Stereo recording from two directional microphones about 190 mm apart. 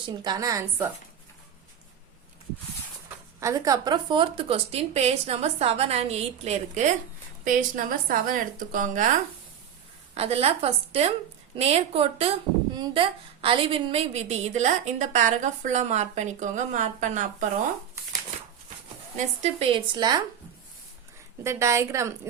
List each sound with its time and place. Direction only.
0.3 s a woman's voice: 20° right (ahead or behind)
3.4 s a woman's voice: 15° right (ahead or behind); by 9.0 s 45° right (ahead or behind)
10.2 s a woman's voice: 30° right (ahead or behind)
19.1 s a woman's voice: 35° right (ahead or behind)
21.4 s a woman's voice: 15° right (ahead or behind)